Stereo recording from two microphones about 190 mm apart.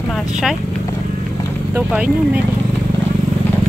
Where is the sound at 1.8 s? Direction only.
5° right (ahead or behind).